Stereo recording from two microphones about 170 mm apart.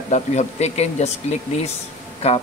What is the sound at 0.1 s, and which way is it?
Speech, 40° left (ahead or behind).